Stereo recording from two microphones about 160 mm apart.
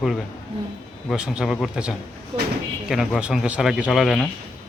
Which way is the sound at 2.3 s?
35° right (ahead or behind).